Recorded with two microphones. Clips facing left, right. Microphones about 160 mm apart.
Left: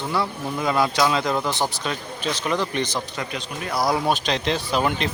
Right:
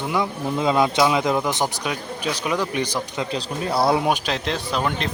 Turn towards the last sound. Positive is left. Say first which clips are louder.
# left 1 dB
turn(degrees=5)  # may be behind; listen again after turning